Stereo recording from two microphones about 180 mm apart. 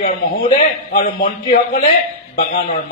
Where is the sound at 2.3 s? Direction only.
50° left (ahead or behind).